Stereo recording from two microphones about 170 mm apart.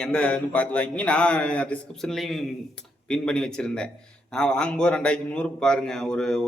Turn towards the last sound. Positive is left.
turn(degrees=5)  # may be behind; listen again after turning